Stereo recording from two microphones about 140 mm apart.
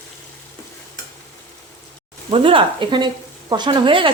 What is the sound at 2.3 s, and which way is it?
A woman's voice, 40° right (ahead or behind).